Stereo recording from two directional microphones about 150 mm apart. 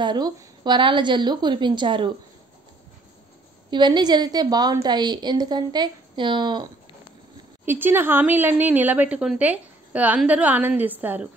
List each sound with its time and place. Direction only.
0.0 s a woman's voice: 30° right (ahead or behind)
3.7 s a woman's voice: 30° right (ahead or behind)
7.6 s speech: 15° right (ahead or behind)